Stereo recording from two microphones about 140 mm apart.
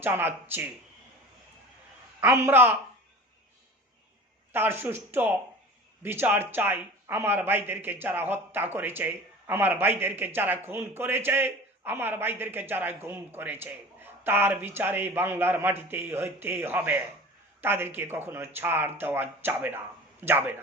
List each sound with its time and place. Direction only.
0.0 s speech: 15° right (ahead or behind)
2.2 s speech: 15° right (ahead or behind)
4.5 s speech: 15° right (ahead or behind)